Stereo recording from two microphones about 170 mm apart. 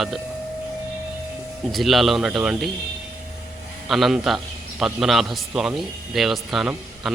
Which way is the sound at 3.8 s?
Centre (ahead or behind).